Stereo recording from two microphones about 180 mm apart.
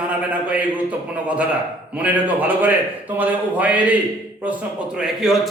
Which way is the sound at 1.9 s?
10° right (ahead or behind).